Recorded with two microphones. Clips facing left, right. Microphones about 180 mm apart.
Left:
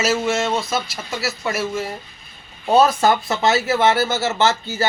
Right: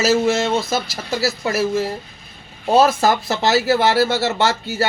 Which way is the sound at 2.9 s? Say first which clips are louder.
Even; 30° right (ahead or behind).